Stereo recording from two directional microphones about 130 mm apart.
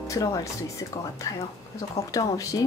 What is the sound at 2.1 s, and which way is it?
Speech, 25° left (ahead or behind).